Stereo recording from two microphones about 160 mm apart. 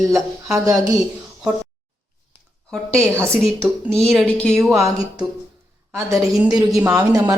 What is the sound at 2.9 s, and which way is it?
Speech, 15° right (ahead or behind).